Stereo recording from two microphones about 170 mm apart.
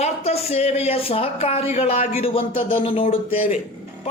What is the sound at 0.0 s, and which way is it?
Speech, 35° left (ahead or behind).